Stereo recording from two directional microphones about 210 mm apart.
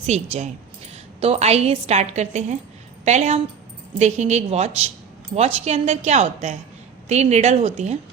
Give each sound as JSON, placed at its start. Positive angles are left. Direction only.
{"t": 0.0, "sound": "a woman's voice", "side_deg": -30}